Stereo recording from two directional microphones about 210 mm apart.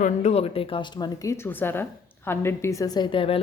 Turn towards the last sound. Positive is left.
turn(degrees=25)  # may be behind; listen again after turning